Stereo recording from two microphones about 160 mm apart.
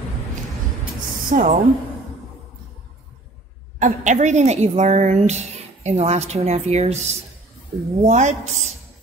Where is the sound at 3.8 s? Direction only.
50° right (ahead or behind).